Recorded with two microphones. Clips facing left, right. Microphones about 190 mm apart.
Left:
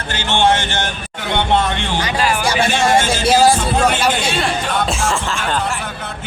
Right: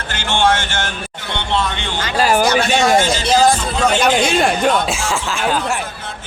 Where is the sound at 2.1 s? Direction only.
40° right (ahead or behind).